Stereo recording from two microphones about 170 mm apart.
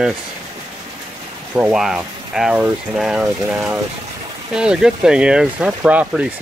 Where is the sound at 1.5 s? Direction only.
10° right (ahead or behind).